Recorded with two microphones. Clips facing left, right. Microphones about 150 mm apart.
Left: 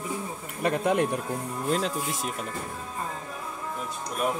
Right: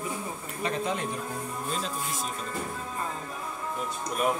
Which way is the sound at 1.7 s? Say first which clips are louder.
Left 8 dB; 70° left (ahead or behind).